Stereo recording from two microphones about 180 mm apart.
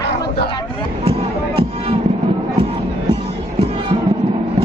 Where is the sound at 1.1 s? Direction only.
30° right (ahead or behind).